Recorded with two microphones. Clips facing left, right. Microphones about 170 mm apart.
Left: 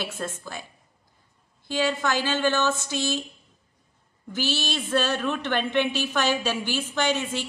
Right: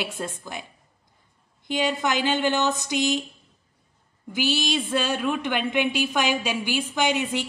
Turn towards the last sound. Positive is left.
turn(degrees=-15)  # may be behind; listen again after turning